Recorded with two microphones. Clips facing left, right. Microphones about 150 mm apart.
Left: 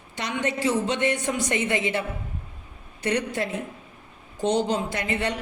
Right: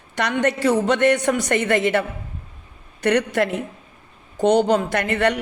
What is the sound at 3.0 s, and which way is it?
Speech, 80° right.